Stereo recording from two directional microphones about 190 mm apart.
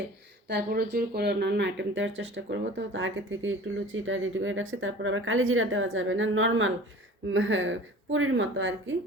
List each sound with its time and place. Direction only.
0.4 s speech: 60° right (ahead or behind); by 8.7 s 80° right